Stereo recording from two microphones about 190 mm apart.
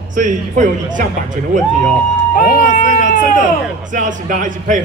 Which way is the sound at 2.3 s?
45° left (ahead or behind).